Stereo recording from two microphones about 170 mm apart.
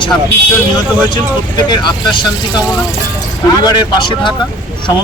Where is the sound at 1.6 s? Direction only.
25° left (ahead or behind).